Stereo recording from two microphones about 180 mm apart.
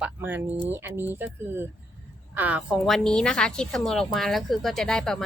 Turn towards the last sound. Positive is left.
turn(degrees=5)  # may be behind; listen again after turning